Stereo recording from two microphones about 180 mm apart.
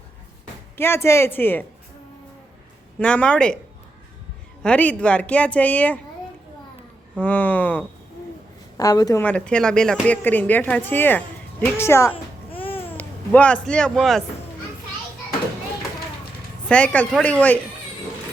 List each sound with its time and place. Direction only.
0.8 s speech: 15° left (ahead or behind)
3.0 s speech: 5° left (ahead or behind)
4.6 s speech: 5° left (ahead or behind)
7.2 s speech: 10° left (ahead or behind)
8.8 s a woman's voice: 20° left (ahead or behind)
9.2 s speech: 5° left (ahead or behind)
16.6 s speech: 5° left (ahead or behind)